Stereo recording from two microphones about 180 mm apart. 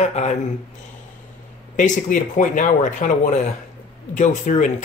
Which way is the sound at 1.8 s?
45° left (ahead or behind).